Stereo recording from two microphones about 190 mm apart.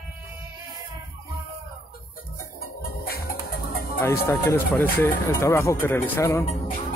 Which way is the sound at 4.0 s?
15° left (ahead or behind).